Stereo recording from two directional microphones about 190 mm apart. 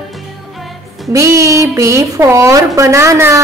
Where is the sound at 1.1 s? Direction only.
15° right (ahead or behind).